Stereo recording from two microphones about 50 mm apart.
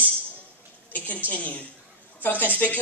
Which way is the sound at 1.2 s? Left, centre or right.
Left.